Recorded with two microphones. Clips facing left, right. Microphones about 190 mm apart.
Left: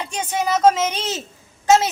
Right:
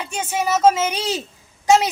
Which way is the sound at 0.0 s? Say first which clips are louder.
Even; 5° right (ahead or behind).